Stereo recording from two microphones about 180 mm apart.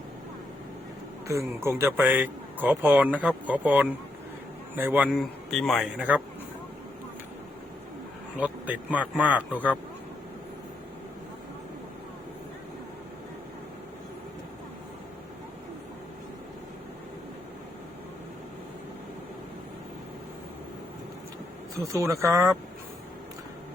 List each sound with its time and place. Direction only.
1.3 s speech: 15° right (ahead or behind)
8.4 s speech: 10° right (ahead or behind)
21.8 s speech: 15° right (ahead or behind)